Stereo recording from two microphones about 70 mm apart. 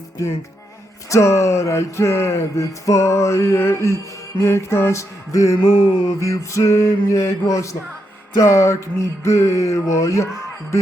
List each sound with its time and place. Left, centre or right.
1.1 s music: left